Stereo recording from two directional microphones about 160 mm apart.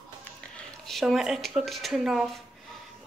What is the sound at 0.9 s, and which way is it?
Speech, centre (ahead or behind).